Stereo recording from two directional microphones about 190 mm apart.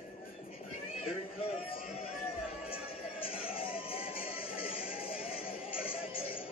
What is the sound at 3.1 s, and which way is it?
Music, 30° left (ahead or behind).